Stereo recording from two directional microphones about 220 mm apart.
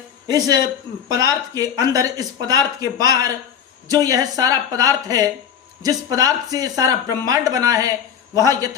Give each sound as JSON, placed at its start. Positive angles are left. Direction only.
{"t": 0.3, "sound": "speech", "side_deg": -15}